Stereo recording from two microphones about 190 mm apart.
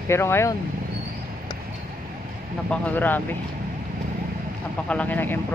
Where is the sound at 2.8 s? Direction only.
10° left (ahead or behind).